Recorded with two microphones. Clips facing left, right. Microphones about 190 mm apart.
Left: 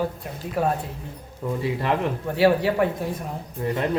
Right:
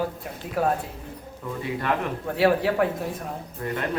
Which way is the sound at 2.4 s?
Centre (ahead or behind).